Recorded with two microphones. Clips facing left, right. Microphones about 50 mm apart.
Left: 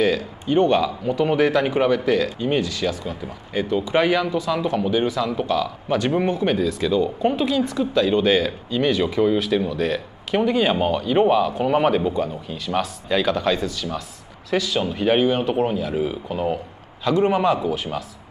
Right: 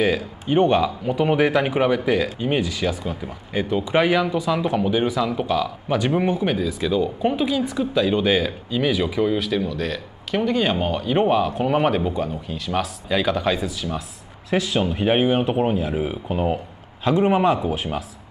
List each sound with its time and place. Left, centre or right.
0.0 s speech: centre
14.5 s a man's voice: right
17.1 s speech: centre